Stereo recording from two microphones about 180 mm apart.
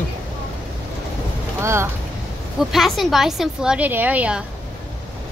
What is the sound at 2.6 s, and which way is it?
A woman's voice, centre (ahead or behind).